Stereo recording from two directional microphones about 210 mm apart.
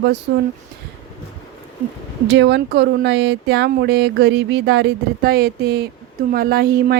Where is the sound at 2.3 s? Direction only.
55° right (ahead or behind).